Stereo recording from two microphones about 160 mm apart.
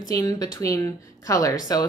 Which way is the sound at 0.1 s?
20° left (ahead or behind).